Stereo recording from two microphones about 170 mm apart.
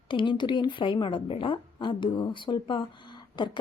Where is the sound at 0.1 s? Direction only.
30° left (ahead or behind).